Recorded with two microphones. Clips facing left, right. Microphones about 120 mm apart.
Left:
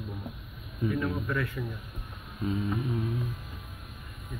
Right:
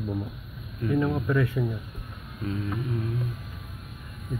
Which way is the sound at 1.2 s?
15° right (ahead or behind).